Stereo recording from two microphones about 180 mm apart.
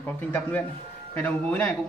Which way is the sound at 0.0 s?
10° left (ahead or behind).